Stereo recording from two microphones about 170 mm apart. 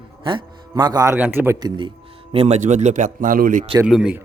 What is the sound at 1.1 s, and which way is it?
Speech, 10° right (ahead or behind).